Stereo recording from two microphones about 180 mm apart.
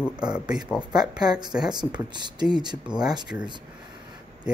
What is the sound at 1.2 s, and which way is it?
Speech, 20° right (ahead or behind).